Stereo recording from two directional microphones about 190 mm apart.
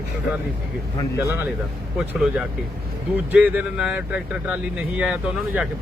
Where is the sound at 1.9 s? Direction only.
5° right (ahead or behind).